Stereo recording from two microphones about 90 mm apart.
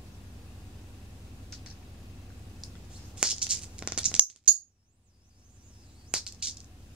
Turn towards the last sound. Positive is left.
turn(degrees=-10)  # may be behind; listen again after turning